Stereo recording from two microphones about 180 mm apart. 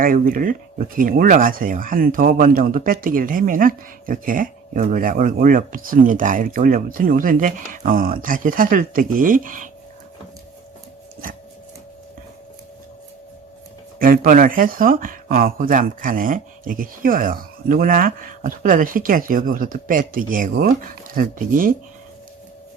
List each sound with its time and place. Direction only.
0.0 s speech: 50° right (ahead or behind)
14.0 s speech: 50° right (ahead or behind)